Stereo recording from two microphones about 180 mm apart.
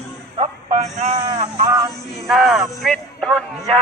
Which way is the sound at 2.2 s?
Centre (ahead or behind).